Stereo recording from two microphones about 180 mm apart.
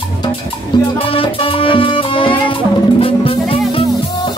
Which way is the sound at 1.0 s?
30° left (ahead or behind).